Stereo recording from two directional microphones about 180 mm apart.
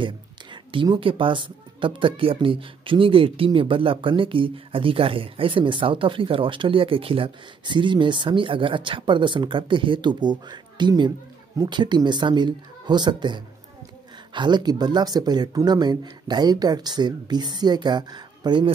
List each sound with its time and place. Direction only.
0.0 s a woman's voice: 25° right (ahead or behind)